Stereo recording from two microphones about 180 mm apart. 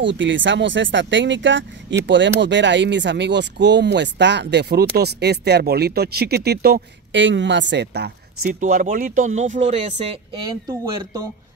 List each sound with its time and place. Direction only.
0.0 s speech: 90° right; by 8.5 s 65° right (ahead or behind)
8.5 s speech: 45° right (ahead or behind)
10.4 s speech: 25° right (ahead or behind)